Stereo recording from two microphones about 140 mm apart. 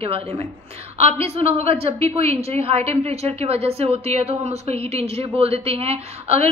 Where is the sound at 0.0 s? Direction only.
45° right (ahead or behind).